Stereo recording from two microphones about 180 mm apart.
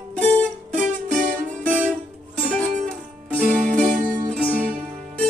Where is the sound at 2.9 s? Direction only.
5° left (ahead or behind).